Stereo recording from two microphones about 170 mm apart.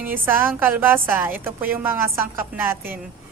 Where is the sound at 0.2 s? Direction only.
15° right (ahead or behind).